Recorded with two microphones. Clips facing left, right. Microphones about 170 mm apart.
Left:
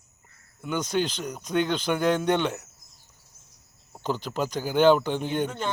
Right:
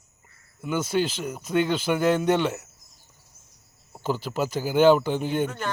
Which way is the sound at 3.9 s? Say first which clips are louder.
Right 2 dB; 5° right (ahead or behind).